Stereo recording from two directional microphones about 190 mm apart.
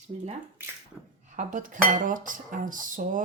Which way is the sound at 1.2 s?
40° right (ahead or behind).